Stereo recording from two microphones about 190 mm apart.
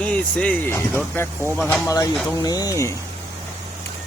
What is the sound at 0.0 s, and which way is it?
Speech, 5° left (ahead or behind).